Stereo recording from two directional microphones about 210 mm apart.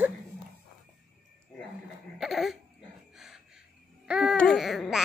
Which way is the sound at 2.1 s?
Centre (ahead or behind).